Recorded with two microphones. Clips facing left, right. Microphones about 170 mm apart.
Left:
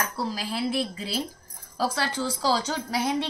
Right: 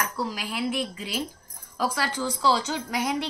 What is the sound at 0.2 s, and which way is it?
Speech, 35° left (ahead or behind).